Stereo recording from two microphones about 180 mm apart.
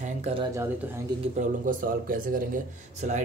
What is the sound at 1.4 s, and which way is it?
Speech, 50° right (ahead or behind).